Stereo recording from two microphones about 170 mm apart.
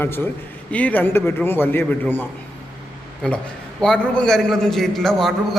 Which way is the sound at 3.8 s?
5° left (ahead or behind).